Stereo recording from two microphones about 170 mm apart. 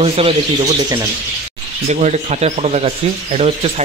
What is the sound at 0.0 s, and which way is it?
Speech, 35° right (ahead or behind).